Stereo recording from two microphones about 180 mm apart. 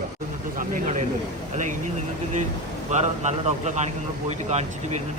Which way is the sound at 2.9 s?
40° right (ahead or behind).